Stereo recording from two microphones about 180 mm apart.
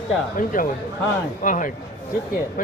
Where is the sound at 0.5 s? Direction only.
50° left (ahead or behind).